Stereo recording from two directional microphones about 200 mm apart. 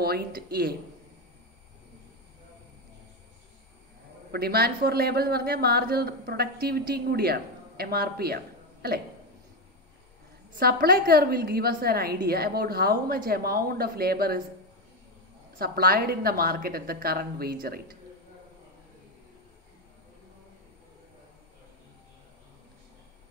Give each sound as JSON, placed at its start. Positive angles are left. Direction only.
{"t": 0.0, "sound": "a man's voice", "side_deg": -50}
{"t": 4.3, "sound": "a man's voice", "side_deg": -50}
{"t": 10.5, "sound": "a man's voice", "side_deg": -50}
{"t": 15.6, "sound": "a man's voice", "side_deg": -50}